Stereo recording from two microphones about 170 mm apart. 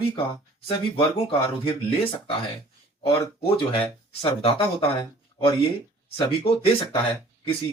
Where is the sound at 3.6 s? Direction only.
30° left (ahead or behind).